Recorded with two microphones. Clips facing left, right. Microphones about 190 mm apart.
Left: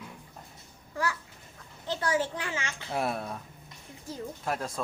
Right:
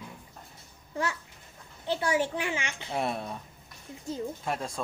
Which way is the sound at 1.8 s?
15° right (ahead or behind).